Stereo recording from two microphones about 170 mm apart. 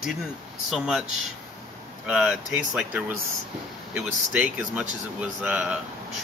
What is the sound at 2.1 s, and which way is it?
Speech, 5° right (ahead or behind).